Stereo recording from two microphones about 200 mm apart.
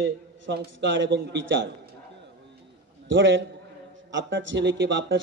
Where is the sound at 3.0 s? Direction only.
65° right (ahead or behind).